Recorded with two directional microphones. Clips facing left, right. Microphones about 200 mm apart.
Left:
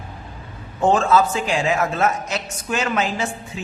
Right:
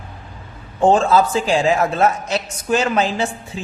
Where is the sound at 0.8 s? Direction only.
30° right (ahead or behind).